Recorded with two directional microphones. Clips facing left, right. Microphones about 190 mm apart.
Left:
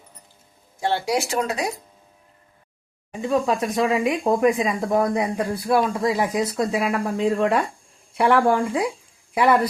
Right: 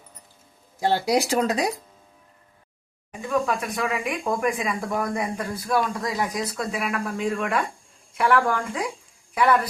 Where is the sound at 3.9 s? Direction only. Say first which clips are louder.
Left 6 dB; 30° left (ahead or behind).